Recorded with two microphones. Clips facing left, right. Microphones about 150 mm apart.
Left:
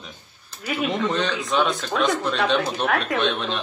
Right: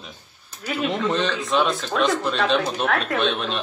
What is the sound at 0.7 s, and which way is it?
A man's voice, centre (ahead or behind).